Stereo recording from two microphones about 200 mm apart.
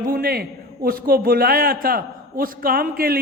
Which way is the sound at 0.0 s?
45° right (ahead or behind).